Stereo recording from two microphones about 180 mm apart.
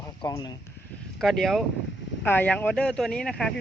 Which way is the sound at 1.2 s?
Centre (ahead or behind).